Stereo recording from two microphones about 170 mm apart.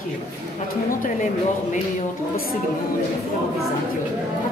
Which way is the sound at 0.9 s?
50° left (ahead or behind).